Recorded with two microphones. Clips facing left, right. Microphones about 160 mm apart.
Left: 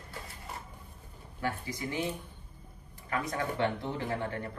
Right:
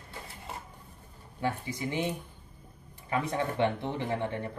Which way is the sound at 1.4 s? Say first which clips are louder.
Right 3 dB; 25° right (ahead or behind).